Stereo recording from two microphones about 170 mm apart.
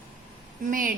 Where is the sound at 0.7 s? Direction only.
55° right (ahead or behind).